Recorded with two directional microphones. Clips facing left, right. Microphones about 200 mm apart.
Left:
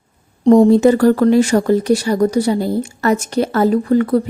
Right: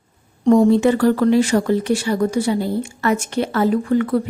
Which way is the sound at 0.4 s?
35° left (ahead or behind).